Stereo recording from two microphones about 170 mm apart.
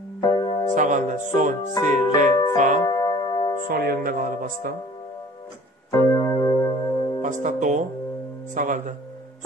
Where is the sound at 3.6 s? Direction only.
65° right (ahead or behind).